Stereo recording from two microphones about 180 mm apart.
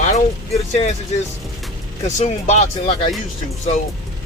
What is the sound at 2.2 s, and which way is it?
Speech, 40° left (ahead or behind).